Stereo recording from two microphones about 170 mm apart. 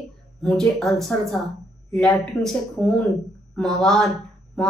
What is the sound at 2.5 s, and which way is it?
Speech, centre (ahead or behind).